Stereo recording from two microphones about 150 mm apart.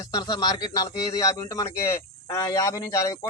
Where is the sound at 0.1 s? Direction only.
25° left (ahead or behind).